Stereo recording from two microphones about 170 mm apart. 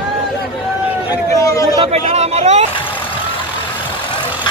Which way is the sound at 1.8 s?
35° right (ahead or behind).